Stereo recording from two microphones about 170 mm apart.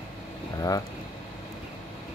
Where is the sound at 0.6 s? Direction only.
20° left (ahead or behind).